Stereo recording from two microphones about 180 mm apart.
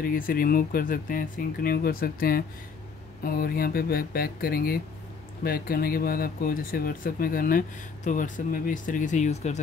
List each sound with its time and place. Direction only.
0.0 s speech: 55° left (ahead or behind)